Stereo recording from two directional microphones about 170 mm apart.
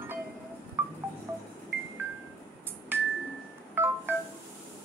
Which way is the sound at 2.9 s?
15° right (ahead or behind).